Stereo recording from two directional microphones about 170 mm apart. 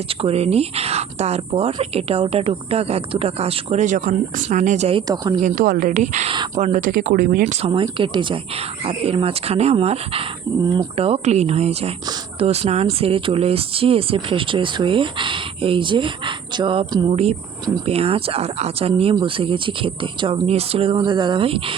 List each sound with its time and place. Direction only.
0.2 s speech: 35° right (ahead or behind)
5.4 s speech: 50° right (ahead or behind)
7.4 s speech: 35° right (ahead or behind)